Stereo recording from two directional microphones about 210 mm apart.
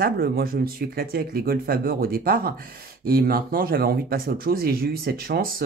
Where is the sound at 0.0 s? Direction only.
45° right (ahead or behind).